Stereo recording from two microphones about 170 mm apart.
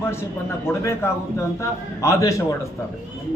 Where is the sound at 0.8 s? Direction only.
15° left (ahead or behind).